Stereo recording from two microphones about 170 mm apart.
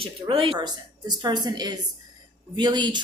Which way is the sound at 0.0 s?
30° right (ahead or behind).